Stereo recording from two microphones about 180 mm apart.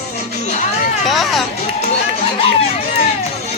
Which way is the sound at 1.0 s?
Centre (ahead or behind).